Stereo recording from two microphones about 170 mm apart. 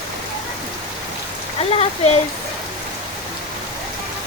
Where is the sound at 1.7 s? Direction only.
35° left (ahead or behind).